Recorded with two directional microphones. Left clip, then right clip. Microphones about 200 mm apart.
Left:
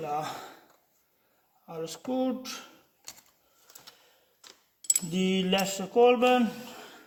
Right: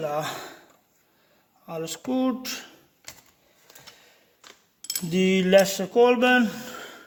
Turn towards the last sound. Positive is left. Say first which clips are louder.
# right 5 dB
turn(degrees=-25)  # may be behind; listen again after turning